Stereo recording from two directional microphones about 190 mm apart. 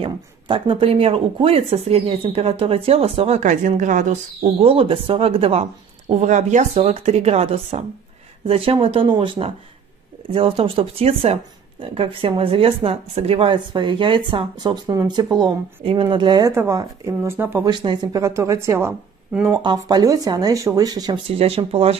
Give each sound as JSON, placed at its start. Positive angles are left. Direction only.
{"t": 0.0, "sound": "speech", "side_deg": -25}
{"t": 17.6, "sound": "a woman's voice", "side_deg": -20}
{"t": 19.5, "sound": "speech", "side_deg": -20}